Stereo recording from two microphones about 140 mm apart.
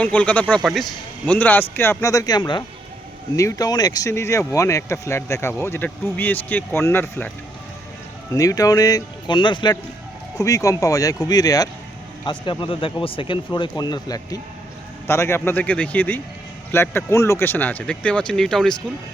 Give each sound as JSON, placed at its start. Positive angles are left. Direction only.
{"t": 0.0, "sound": "speech", "side_deg": 10}
{"t": 0.6, "sound": "speech", "side_deg": 0}
{"t": 1.2, "sound": "speech", "side_deg": 10}
{"t": 8.3, "sound": "speech", "side_deg": 25}
{"t": 10.3, "sound": "speech", "side_deg": 25}